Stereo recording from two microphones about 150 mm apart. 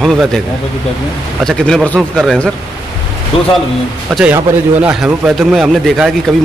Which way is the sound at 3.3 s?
40° left (ahead or behind).